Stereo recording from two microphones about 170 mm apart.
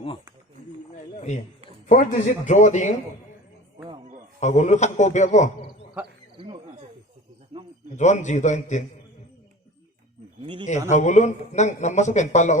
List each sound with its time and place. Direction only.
0.9 s a sound: 45° left (ahead or behind)
1.9 s a man's voice: 45° left (ahead or behind)
4.4 s a man's voice: 45° left (ahead or behind)
6.3 s a sound: 30° right (ahead or behind)
7.9 s a man's voice: 45° left (ahead or behind)
10.4 s speech: 30° right (ahead or behind)
10.8 s a man's voice: 45° left (ahead or behind)